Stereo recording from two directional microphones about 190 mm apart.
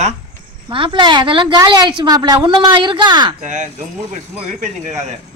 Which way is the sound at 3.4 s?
40° right (ahead or behind).